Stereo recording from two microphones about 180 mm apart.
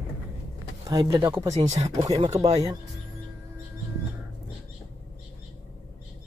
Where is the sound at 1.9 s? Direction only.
20° right (ahead or behind).